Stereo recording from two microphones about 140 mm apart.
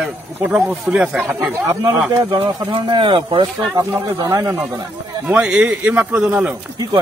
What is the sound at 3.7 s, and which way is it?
Speech, 25° right (ahead or behind).